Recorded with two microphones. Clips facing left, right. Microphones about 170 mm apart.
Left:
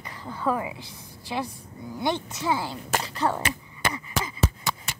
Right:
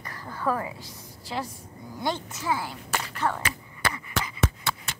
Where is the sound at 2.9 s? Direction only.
30° left (ahead or behind).